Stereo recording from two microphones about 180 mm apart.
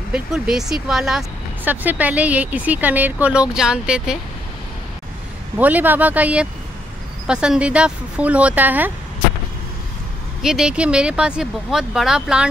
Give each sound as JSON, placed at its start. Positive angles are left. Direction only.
{"t": 0.1, "sound": "speech", "side_deg": -5}
{"t": 5.6, "sound": "speech", "side_deg": -10}
{"t": 10.4, "sound": "speech", "side_deg": -5}